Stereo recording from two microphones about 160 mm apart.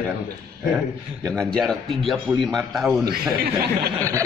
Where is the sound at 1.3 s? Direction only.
Centre (ahead or behind).